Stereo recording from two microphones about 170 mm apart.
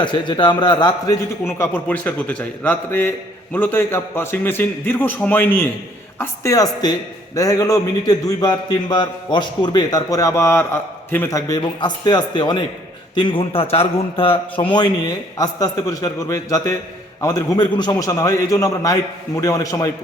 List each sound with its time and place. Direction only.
0.0 s a man's voice: 30° left (ahead or behind)